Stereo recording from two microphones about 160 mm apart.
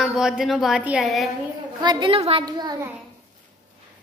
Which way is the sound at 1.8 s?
30° right (ahead or behind).